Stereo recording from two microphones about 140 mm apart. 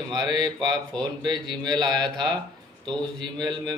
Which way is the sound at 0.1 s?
30° right (ahead or behind).